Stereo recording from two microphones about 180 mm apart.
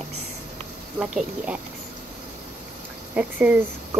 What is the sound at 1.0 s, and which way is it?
Speech, 5° right (ahead or behind).